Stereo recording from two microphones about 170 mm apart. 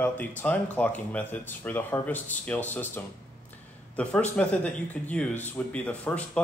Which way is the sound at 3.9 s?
10° left (ahead or behind).